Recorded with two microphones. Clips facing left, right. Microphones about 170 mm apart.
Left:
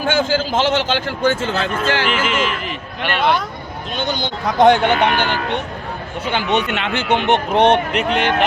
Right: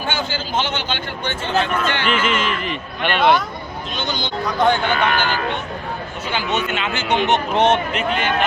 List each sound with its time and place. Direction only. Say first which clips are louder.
0.1 s a man's voice: left 7 dB; 90° left
2.0 s a man's voice: left 1 dB; 10° left (ahead or behind)
4.4 s speech: left 6 dB; 75° left (ahead or behind)